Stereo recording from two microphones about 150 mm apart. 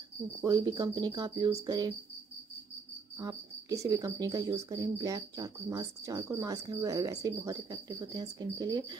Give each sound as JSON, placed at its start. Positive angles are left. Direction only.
{"t": 0.5, "sound": "cricket", "side_deg": -30}
{"t": 3.2, "sound": "cricket", "side_deg": -25}